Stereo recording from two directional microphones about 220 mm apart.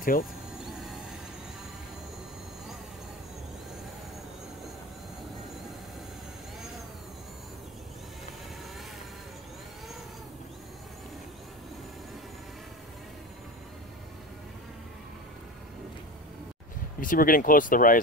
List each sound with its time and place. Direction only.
0.0 s speech: 40° left (ahead or behind)
0.6 s music: centre (ahead or behind)
17.0 s speech: 40° left (ahead or behind)